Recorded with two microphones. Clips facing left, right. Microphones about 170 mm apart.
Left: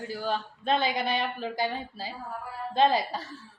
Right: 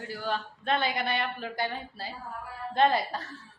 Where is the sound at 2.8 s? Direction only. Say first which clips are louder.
Left 1 dB; 10° left (ahead or behind).